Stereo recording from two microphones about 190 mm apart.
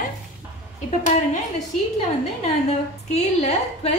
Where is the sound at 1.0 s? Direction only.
40° left (ahead or behind).